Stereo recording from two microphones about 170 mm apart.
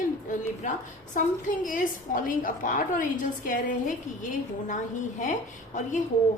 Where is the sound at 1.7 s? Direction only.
50° left (ahead or behind).